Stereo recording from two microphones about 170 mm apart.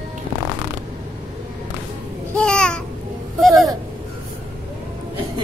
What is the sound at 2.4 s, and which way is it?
Babbling, 5° left (ahead or behind).